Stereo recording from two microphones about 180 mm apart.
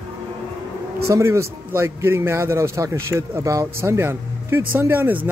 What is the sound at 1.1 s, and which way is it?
A man's voice, 15° right (ahead or behind).